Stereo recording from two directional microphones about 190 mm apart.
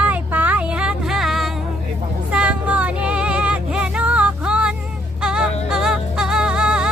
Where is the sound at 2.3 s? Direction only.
5° right (ahead or behind).